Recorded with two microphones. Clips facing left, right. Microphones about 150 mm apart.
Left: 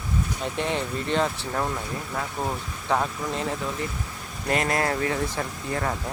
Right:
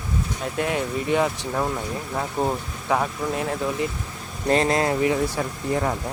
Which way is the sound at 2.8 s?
5° right (ahead or behind).